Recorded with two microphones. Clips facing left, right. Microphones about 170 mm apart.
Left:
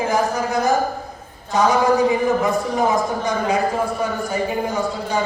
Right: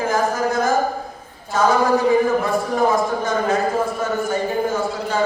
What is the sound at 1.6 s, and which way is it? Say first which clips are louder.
Speech: even; 20° left (ahead or behind).